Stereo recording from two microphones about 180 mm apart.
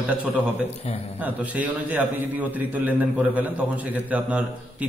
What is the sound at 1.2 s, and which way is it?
A man's voice, 10° right (ahead or behind).